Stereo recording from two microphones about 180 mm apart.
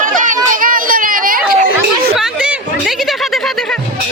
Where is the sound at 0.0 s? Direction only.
45° right (ahead or behind).